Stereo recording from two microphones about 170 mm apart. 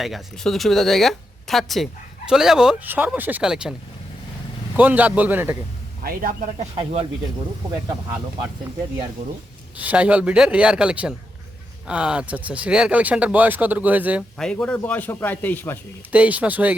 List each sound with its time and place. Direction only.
0.0 s speech: centre (ahead or behind)
4.8 s speech: 10° right (ahead or behind)
6.0 s a man's voice: 60° right (ahead or behind)
6.7 s speech: 30° right (ahead or behind)
9.7 s speech: 10° right (ahead or behind)
14.3 s speech: 5° left (ahead or behind)
16.1 s speech: 10° right (ahead or behind)